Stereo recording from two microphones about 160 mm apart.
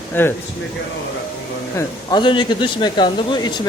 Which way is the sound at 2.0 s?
30° left (ahead or behind).